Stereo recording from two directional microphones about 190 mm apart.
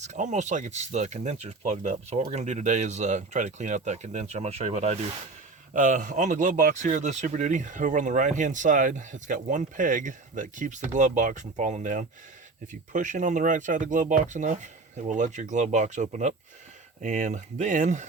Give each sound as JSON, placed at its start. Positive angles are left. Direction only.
{"t": 0.0, "sound": "speech", "side_deg": -40}